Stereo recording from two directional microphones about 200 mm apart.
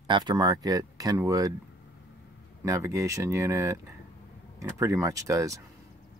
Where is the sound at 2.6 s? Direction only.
15° right (ahead or behind).